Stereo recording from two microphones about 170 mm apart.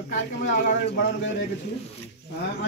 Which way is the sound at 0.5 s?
70° left (ahead or behind).